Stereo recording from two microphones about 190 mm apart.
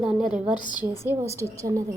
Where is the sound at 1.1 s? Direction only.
15° right (ahead or behind).